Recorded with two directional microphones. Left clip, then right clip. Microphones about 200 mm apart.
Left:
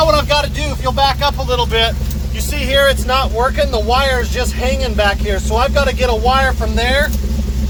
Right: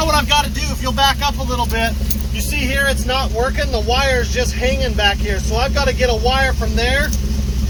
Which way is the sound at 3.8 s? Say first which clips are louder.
Even; 60° left (ahead or behind).